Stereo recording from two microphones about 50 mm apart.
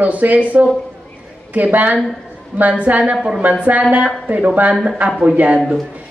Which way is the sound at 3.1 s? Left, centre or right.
Centre.